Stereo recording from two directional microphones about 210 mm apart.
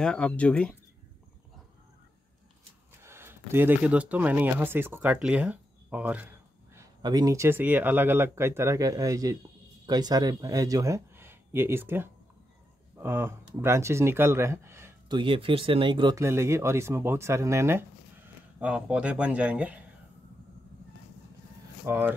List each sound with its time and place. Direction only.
0.0 s speech: 5° left (ahead or behind)
3.0 s speech: 10° right (ahead or behind)
21.8 s speech: 10° right (ahead or behind)